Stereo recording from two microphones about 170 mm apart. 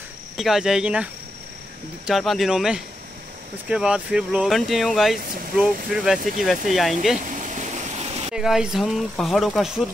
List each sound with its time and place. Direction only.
0.4 s speech: 5° right (ahead or behind)
7.2 s vehicle: 45° right (ahead or behind)
8.4 s speech: 5° right (ahead or behind)